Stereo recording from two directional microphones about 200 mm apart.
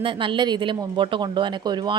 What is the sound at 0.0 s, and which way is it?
Speech, 25° right (ahead or behind).